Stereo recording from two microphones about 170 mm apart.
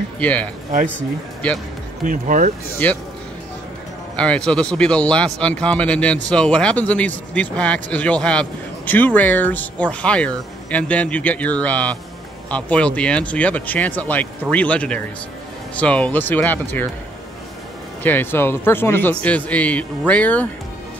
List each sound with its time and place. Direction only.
0.2 s speech: 10° left (ahead or behind)
2.0 s speech: 50° right (ahead or behind)
2.8 s speech: 10° left (ahead or behind)
4.2 s speech: 5° left (ahead or behind)
18.0 s speech: 10° left (ahead or behind)